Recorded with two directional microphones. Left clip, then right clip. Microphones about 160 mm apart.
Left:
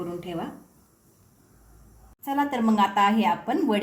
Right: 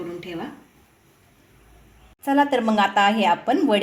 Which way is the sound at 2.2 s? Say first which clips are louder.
Right 6 dB; 35° right (ahead or behind).